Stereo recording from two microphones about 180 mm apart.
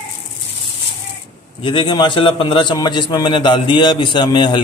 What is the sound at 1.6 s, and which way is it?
A man's voice, 25° left (ahead or behind).